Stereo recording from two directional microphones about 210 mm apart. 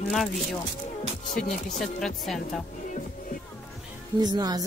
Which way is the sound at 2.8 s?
35° left (ahead or behind).